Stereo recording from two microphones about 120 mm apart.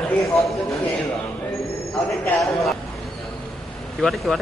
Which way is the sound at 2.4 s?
Centre (ahead or behind).